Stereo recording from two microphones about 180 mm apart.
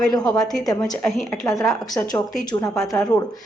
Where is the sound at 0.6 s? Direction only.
20° left (ahead or behind).